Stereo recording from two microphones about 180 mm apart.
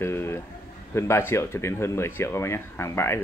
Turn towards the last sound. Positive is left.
turn(degrees=15)  # may be behind; listen again after turning